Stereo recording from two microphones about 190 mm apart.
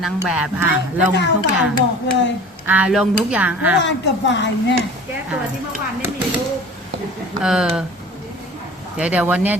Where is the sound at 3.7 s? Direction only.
70° left (ahead or behind).